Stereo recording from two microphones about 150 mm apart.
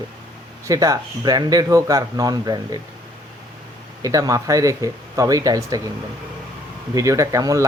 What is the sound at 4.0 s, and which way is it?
Speech, 20° right (ahead or behind).